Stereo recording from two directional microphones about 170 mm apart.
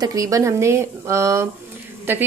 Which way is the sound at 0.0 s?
20° right (ahead or behind).